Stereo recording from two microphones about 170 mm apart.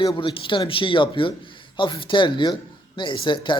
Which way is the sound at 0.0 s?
30° left (ahead or behind).